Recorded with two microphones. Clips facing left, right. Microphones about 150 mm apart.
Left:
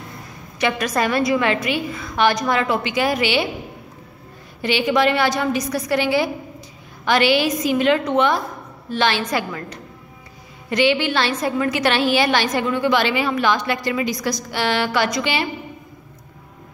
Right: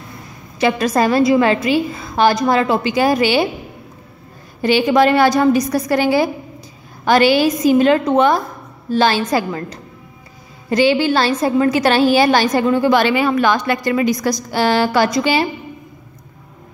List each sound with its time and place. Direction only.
0.6 s a woman's voice: 30° right (ahead or behind)
4.6 s a woman's voice: 40° right (ahead or behind)